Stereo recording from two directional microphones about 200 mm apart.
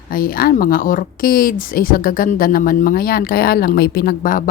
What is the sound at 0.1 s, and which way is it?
Speech, 45° left (ahead or behind).